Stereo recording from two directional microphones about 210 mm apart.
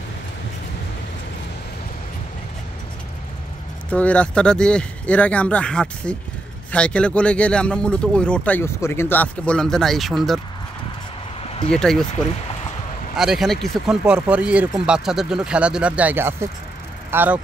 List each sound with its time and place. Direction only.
3.9 s speech: 5° left (ahead or behind)
11.4 s a sound: 30° left (ahead or behind)
11.7 s speech: 5° left (ahead or behind)
13.1 s speech: centre (ahead or behind)